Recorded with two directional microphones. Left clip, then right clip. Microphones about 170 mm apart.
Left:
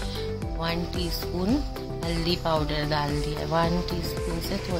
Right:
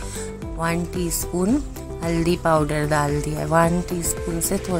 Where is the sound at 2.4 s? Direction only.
35° right (ahead or behind).